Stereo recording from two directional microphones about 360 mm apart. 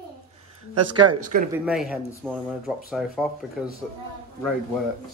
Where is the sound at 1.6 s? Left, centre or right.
Centre.